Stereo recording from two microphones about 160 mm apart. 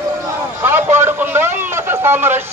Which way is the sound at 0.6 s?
15° right (ahead or behind).